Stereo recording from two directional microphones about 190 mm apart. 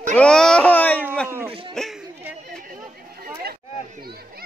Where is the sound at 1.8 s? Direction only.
5° left (ahead or behind).